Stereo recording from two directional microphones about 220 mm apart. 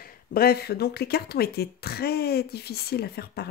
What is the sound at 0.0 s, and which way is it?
Speech, 45° left (ahead or behind).